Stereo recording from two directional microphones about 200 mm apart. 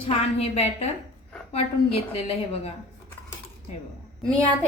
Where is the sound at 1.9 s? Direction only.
30° left (ahead or behind).